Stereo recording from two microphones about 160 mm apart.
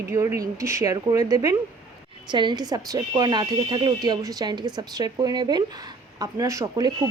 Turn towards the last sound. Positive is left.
turn(degrees=-20)  # may be behind; listen again after turning